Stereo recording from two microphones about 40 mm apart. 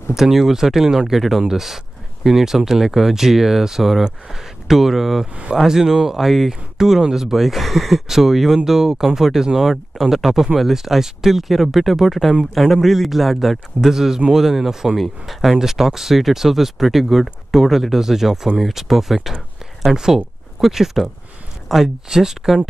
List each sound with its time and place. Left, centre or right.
0.1 s speech: centre
5.2 s speech: right
5.6 s speech: centre
15.0 s speech: centre
20.6 s speech: centre